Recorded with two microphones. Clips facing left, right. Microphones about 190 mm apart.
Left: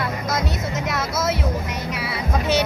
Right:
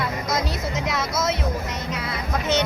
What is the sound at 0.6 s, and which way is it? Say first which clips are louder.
Speech: left 1 dB; centre (ahead or behind).